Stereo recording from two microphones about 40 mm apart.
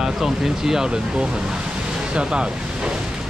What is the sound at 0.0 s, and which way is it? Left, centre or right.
Speech, centre.